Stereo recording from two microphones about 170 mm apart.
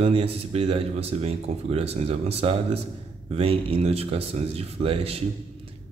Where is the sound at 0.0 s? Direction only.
35° right (ahead or behind).